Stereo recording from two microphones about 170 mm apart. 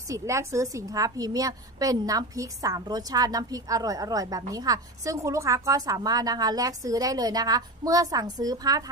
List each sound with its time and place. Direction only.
0.1 s a woman's voice: 20° right (ahead or behind)